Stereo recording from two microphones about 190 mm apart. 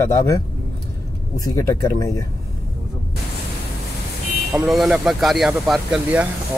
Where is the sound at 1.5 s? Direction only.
15° left (ahead or behind).